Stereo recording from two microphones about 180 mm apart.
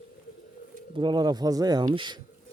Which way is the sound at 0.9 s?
25° right (ahead or behind).